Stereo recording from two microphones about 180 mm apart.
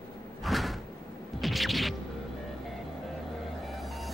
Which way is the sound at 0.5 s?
Centre (ahead or behind).